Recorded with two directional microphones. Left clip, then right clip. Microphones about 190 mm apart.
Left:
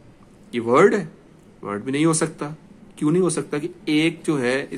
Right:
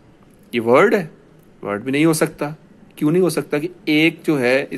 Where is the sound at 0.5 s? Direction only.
25° right (ahead or behind).